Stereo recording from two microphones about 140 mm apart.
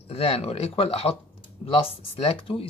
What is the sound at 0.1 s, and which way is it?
Speech, 45° left (ahead or behind).